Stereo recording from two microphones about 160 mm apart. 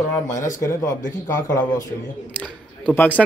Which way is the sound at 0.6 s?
20° left (ahead or behind).